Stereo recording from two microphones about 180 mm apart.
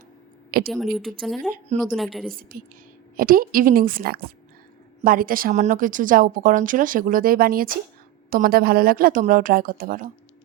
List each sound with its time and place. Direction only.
0.7 s a woman's voice: centre (ahead or behind)
1.7 s speech: 40° right (ahead or behind)
2.3 s a woman's voice: 55° right (ahead or behind)